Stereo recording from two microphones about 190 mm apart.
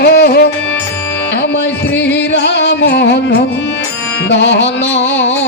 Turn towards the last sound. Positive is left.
turn(degrees=70)  # may be behind; listen again after turning